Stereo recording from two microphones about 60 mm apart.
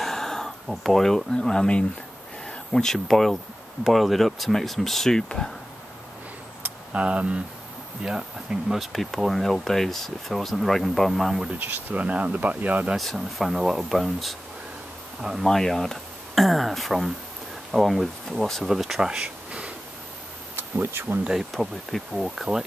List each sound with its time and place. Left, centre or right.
0.0 s speech: centre
6.9 s speech: right; by 11.5 s centre
11.5 s speech: right
12.9 s speech: centre
15.3 s speech: centre
20.5 s speech: right
21.3 s speech: centre